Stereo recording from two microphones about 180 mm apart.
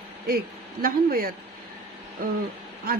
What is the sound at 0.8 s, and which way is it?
A man's voice, 55° right (ahead or behind).